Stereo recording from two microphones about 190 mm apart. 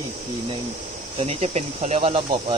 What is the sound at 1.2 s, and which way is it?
Cricket, 35° right (ahead or behind).